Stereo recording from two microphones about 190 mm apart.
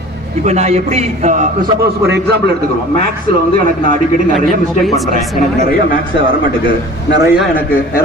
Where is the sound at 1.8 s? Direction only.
60° right (ahead or behind).